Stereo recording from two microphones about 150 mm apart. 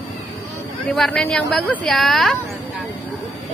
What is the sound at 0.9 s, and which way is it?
Speech, 5° left (ahead or behind).